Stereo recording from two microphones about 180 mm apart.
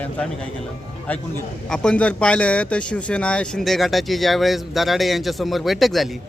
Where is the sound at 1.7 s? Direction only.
5° left (ahead or behind).